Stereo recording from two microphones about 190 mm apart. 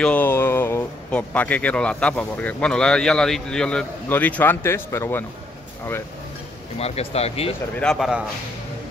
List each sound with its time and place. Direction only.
0.0 s speech: 10° left (ahead or behind)
6.8 s speech: 30° left (ahead or behind)
7.8 s a man's voice: centre (ahead or behind)